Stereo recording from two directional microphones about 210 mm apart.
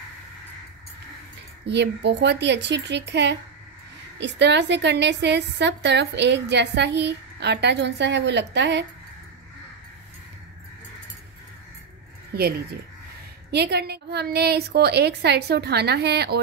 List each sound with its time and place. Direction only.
1.7 s a woman's voice: 55° right (ahead or behind)
12.3 s a sound: 50° right (ahead or behind)
13.5 s a woman's voice: 50° right (ahead or behind)